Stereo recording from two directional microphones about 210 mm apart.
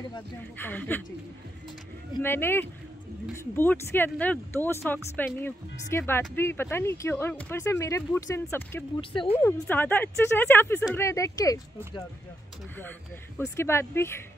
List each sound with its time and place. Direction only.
0.4 s speech: 10° left (ahead or behind)
2.2 s speech: 10° left (ahead or behind)
9.1 s speech: 25° left (ahead or behind)
9.4 s speech: 10° left (ahead or behind)
13.4 s speech: 10° left (ahead or behind)